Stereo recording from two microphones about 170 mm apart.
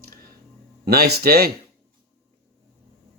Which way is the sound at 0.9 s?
65° right (ahead or behind).